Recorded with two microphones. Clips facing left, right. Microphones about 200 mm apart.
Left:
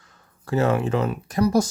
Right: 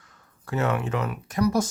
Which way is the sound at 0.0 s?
30° left (ahead or behind).